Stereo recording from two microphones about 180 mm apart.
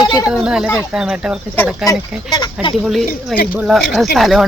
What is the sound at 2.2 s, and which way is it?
Speech, 25° left (ahead or behind).